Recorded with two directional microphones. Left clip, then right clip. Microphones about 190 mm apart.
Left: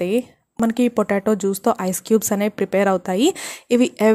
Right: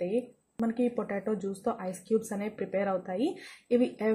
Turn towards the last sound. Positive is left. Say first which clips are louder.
# left 11 dB
turn(degrees=40)  # may be behind; listen again after turning